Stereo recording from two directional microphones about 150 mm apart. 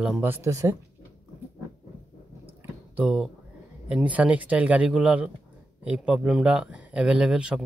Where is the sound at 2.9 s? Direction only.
5° right (ahead or behind).